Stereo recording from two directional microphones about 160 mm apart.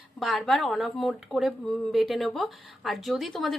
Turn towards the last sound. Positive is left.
turn(degrees=0)  # may be behind; listen again after turning